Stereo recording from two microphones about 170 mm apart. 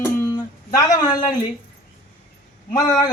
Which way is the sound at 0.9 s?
25° left (ahead or behind).